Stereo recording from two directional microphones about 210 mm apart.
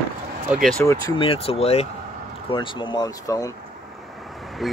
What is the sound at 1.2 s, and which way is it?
Speech, 25° left (ahead or behind).